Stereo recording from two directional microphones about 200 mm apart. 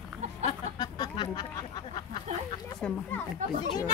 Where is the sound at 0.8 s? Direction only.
20° left (ahead or behind).